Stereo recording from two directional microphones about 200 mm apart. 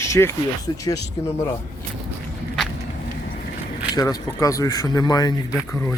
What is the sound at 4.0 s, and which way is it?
Speech, 15° left (ahead or behind).